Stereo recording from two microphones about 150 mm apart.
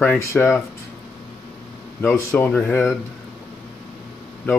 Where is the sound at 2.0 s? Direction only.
15° left (ahead or behind).